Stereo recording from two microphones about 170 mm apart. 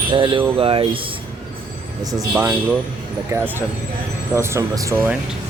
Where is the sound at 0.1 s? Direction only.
30° right (ahead or behind).